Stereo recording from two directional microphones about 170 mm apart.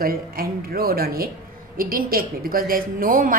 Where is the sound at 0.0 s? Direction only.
60° right (ahead or behind).